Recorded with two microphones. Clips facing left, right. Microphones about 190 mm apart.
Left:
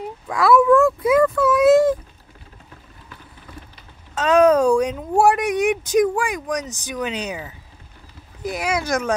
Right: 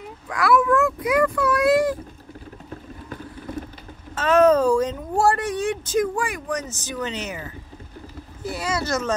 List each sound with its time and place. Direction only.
0.4 s speech: 25° left (ahead or behind)
4.2 s speech: 15° left (ahead or behind)